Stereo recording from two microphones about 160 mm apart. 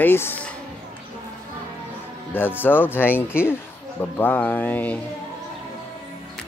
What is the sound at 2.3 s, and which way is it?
A man's voice, 10° left (ahead or behind).